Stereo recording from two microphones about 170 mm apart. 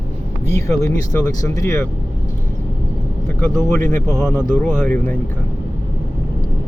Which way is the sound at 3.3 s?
15° left (ahead or behind).